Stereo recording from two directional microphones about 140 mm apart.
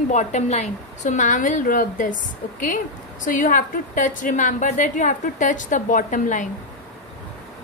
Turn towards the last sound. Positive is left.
turn(degrees=65)  # may be behind; listen again after turning